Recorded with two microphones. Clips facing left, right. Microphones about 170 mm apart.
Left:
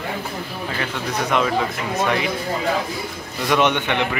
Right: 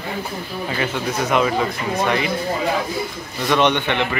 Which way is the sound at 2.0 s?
Centre (ahead or behind).